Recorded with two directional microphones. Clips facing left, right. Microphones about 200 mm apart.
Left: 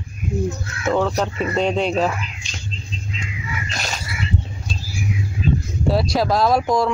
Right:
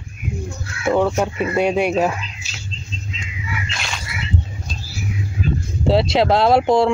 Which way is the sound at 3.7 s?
40° left (ahead or behind).